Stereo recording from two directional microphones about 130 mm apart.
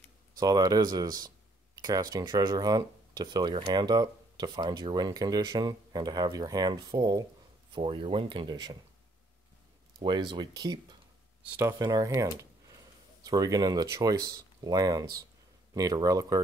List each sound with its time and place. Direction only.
0.4 s speech: 30° right (ahead or behind)
10.0 s speech: 40° right (ahead or behind)